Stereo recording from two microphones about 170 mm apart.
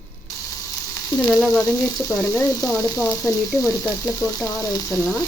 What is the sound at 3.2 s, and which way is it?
Frying, 20° left (ahead or behind).